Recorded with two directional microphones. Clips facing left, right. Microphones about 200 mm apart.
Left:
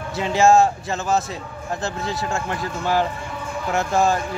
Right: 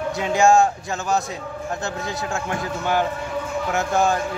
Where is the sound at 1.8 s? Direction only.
Centre (ahead or behind).